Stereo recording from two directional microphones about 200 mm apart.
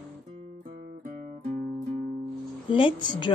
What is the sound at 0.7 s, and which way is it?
Music, 45° right (ahead or behind).